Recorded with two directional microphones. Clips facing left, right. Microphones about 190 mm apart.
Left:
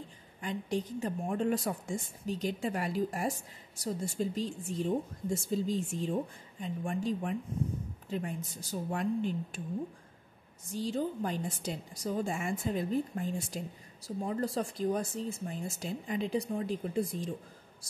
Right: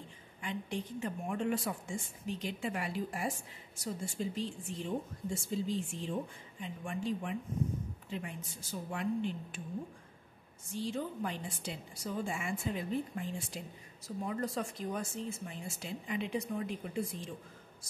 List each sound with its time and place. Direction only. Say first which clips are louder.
0.4 s a woman's voice: left 5 dB; 40° left (ahead or behind)
10.7 s a woman's voice: left 4 dB; 35° left (ahead or behind)